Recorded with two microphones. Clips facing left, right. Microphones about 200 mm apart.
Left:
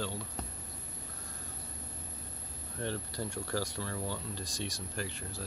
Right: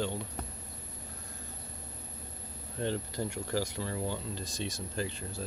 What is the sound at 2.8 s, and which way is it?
Speech, 20° right (ahead or behind).